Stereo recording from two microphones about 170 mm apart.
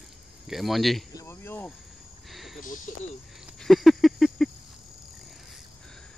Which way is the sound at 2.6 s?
50° left (ahead or behind).